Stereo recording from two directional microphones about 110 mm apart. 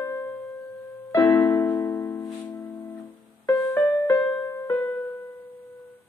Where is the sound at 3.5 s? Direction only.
35° left (ahead or behind).